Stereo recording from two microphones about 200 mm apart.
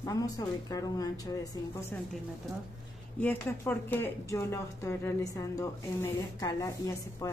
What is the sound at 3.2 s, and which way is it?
Speech, 10° left (ahead or behind).